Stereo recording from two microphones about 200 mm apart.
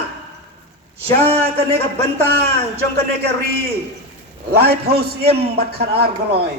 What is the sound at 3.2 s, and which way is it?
A man's voice, 55° right (ahead or behind).